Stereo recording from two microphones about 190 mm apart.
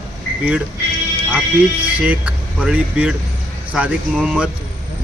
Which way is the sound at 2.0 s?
5° right (ahead or behind).